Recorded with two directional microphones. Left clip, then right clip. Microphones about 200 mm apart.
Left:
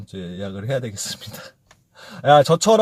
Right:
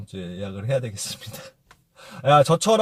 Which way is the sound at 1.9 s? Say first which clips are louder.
Left 3 dB; 5° left (ahead or behind).